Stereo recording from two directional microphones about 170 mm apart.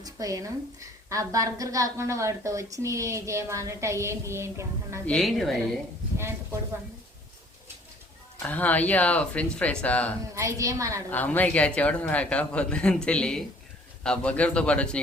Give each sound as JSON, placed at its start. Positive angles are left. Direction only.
{"t": 0.0, "sound": "a woman's voice", "side_deg": -20}
{"t": 5.0, "sound": "a woman's voice", "side_deg": 0}
{"t": 6.1, "sound": "a sound", "side_deg": -15}
{"t": 8.4, "sound": "a man's voice", "side_deg": 10}
{"t": 10.3, "sound": "a woman's voice", "side_deg": -20}
{"t": 11.1, "sound": "a man's voice", "side_deg": 10}